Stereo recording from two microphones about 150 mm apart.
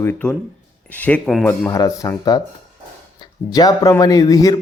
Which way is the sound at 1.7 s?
20° left (ahead or behind).